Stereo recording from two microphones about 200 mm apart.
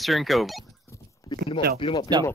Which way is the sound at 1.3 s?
20° left (ahead or behind).